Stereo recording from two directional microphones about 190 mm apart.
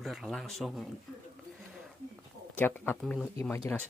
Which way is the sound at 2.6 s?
10° left (ahead or behind).